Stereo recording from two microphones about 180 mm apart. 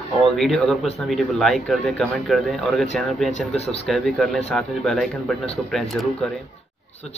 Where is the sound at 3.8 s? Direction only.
5° left (ahead or behind).